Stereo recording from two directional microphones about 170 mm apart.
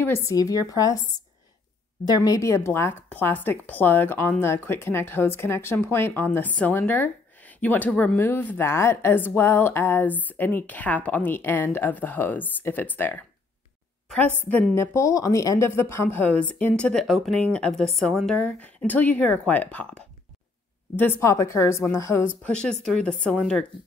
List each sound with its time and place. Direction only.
0.0 s a woman's voice: 15° left (ahead or behind)
2.0 s a woman's voice: 20° left (ahead or behind)
22.4 s speech: 5° left (ahead or behind)